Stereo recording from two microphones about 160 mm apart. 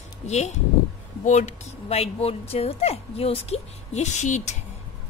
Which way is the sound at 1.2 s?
45° left (ahead or behind).